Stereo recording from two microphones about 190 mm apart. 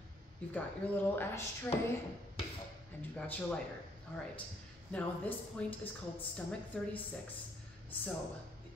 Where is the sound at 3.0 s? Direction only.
10° left (ahead or behind).